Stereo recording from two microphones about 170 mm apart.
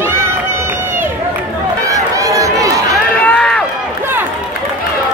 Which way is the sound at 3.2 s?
5° left (ahead or behind).